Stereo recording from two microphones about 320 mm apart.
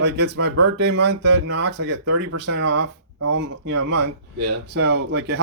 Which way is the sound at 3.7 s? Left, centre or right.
Right.